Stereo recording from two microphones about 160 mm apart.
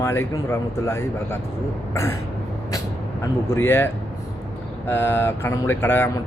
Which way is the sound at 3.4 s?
15° left (ahead or behind).